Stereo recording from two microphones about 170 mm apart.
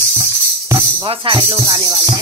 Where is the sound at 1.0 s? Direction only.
30° right (ahead or behind).